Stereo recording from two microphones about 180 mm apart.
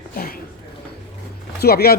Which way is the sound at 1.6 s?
60° left (ahead or behind).